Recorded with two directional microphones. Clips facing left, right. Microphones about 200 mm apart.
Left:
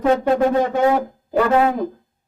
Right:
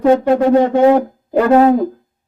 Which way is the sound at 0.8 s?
30° right (ahead or behind).